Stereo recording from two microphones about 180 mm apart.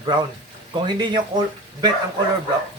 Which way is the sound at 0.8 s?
25° right (ahead or behind).